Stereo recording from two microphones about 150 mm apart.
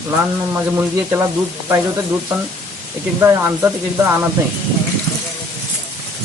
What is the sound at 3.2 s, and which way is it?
Speech, 20° right (ahead or behind).